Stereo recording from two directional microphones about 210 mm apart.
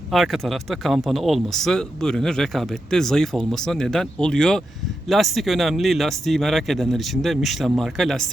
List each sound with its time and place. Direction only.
0.1 s speech: centre (ahead or behind)